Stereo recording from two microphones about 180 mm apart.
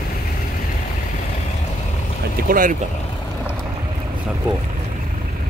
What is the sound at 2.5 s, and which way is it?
Boat, 50° right (ahead or behind).